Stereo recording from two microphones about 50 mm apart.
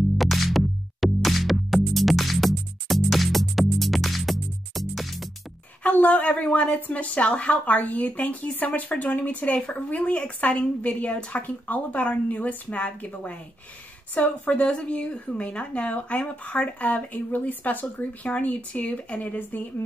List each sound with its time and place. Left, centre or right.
0.2 s music: centre
5.9 s a woman's voice: left